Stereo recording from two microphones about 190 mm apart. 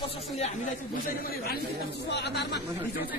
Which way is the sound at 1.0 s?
50° left (ahead or behind).